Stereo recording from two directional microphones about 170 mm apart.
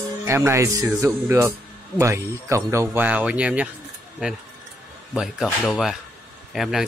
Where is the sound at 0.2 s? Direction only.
15° right (ahead or behind).